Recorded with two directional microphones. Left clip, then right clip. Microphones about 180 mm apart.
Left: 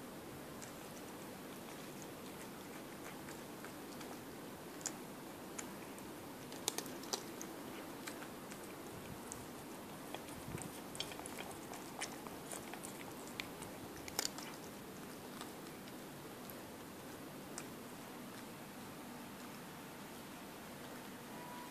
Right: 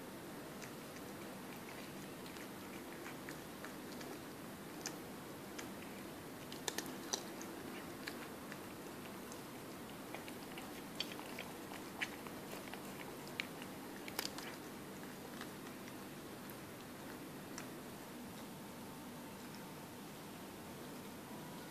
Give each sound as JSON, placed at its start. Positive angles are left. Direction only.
{"t": 6.6, "sound": "typing", "side_deg": 15}